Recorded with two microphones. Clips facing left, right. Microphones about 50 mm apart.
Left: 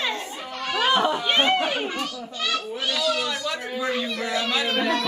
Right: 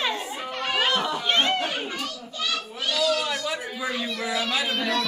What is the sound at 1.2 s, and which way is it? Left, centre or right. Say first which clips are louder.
Chatter: left 2 dB; centre.